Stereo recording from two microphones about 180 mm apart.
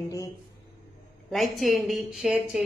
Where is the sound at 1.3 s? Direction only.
Centre (ahead or behind).